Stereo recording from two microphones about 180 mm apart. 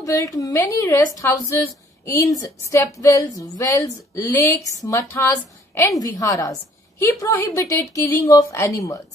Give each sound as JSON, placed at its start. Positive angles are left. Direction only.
{"t": 0.0, "sound": "a woman's voice", "side_deg": 20}